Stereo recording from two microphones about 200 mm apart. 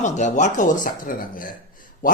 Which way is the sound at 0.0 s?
35° left (ahead or behind).